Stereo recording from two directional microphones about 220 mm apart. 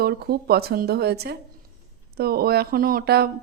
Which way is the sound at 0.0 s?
45° right (ahead or behind).